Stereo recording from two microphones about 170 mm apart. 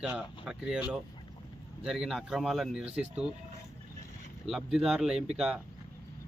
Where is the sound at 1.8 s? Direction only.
Centre (ahead or behind).